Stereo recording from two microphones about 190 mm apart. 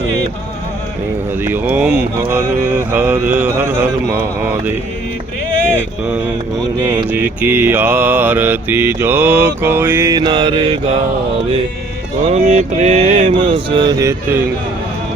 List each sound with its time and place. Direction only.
1.5 s mantra: 10° right (ahead or behind)
7.1 s mantra: 10° right (ahead or behind)
12.3 s mantra: 35° right (ahead or behind)